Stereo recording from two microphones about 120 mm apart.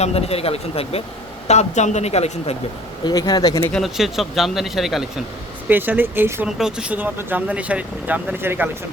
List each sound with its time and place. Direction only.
0.0 s speech: 55° left (ahead or behind)
1.5 s speech: 70° left (ahead or behind)
3.0 s speech: 35° left (ahead or behind)
3.7 s speech: centre (ahead or behind)
5.6 s speech: 15° right (ahead or behind)
6.6 s speech: 5° right (ahead or behind)